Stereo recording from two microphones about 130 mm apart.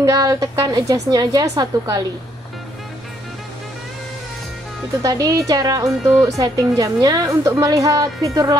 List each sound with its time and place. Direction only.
0.0 s a woman's voice: 30° right (ahead or behind)
5.0 s a woman's voice: 30° right (ahead or behind)